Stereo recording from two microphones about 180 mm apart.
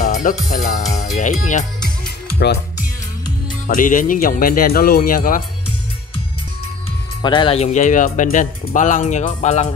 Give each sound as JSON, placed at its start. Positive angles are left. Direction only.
{"t": 0.0, "sound": "speech", "side_deg": 50}
{"t": 2.3, "sound": "speech", "side_deg": 65}
{"t": 3.6, "sound": "speech", "side_deg": 50}
{"t": 7.2, "sound": "speech", "side_deg": 25}